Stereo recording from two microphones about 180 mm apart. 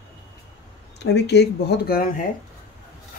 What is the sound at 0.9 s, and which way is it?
Speech, 70° left (ahead or behind).